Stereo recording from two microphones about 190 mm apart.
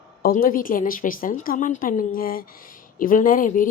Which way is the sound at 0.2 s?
50° left (ahead or behind).